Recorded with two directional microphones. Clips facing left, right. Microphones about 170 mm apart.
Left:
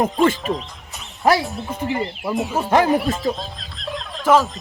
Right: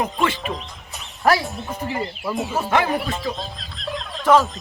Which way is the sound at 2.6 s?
40° left (ahead or behind).